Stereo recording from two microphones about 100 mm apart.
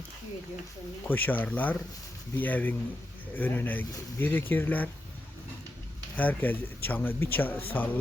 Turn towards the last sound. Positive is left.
turn(degrees=15)  # may be behind; listen again after turning